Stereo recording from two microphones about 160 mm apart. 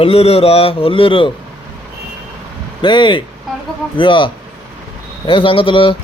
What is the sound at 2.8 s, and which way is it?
A man's voice, 30° left (ahead or behind).